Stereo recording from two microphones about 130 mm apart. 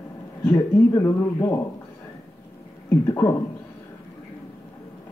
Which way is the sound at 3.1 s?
25° left (ahead or behind).